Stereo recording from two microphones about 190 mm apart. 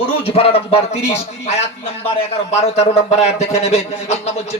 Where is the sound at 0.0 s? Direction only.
30° left (ahead or behind).